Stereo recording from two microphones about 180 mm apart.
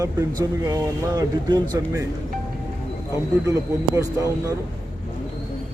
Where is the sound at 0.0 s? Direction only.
20° right (ahead or behind).